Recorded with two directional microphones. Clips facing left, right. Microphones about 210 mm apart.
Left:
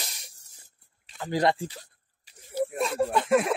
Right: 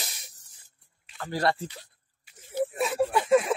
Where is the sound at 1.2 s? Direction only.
15° left (ahead or behind).